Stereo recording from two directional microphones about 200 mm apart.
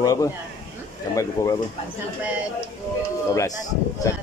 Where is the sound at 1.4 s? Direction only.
15° left (ahead or behind).